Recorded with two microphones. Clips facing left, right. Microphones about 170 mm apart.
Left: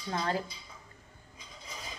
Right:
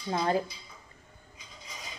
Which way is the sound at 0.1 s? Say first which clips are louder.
Right 5 dB; 20° right (ahead or behind).